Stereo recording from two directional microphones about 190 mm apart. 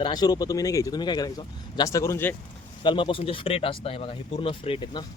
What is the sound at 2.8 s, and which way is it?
Speech, 25° left (ahead or behind).